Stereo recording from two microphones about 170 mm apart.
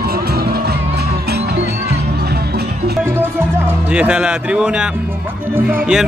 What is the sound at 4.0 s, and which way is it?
Speech, 5° right (ahead or behind).